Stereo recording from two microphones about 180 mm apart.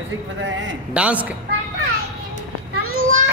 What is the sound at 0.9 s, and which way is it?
Speech, 5° right (ahead or behind).